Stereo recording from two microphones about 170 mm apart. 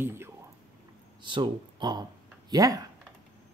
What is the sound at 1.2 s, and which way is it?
Speech, 30° right (ahead or behind).